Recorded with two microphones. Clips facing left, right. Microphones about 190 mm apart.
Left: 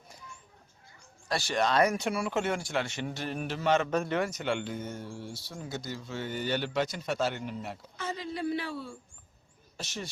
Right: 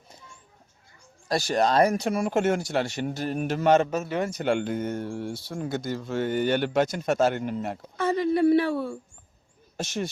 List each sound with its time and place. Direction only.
1.3 s speech: 40° right (ahead or behind)
3.8 s a man's voice: 10° right (ahead or behind)
4.2 s speech: 30° right (ahead or behind)
4.4 s speech: 50° right (ahead or behind)